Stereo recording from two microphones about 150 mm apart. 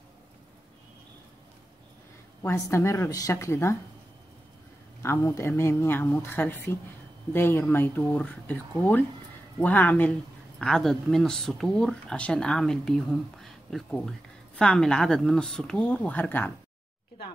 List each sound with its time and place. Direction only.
2.4 s a woman's voice: 15° left (ahead or behind)
5.0 s speech: 15° left (ahead or behind)